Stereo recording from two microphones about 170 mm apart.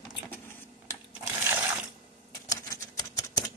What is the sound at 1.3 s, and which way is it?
Sewing machine, 10° right (ahead or behind).